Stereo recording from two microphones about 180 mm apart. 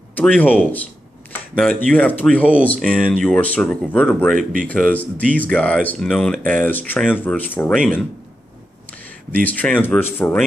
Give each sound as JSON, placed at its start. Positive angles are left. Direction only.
{"t": 0.1, "sound": "speech", "side_deg": 10}
{"t": 4.4, "sound": "speech", "side_deg": -50}
{"t": 4.6, "sound": "speech", "side_deg": 10}
{"t": 9.3, "sound": "speech", "side_deg": 10}